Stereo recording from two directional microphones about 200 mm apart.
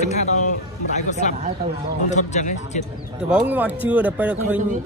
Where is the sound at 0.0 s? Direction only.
35° left (ahead or behind).